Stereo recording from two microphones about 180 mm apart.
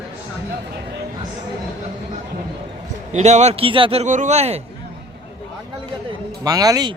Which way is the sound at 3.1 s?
40° right (ahead or behind).